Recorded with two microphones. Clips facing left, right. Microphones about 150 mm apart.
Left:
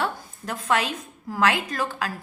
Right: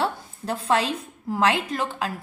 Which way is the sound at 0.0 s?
30° right (ahead or behind).